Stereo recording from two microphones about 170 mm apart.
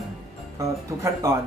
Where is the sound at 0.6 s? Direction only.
20° right (ahead or behind).